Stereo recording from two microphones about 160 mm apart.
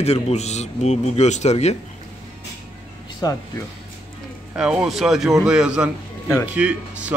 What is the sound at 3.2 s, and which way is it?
Speech, 25° left (ahead or behind).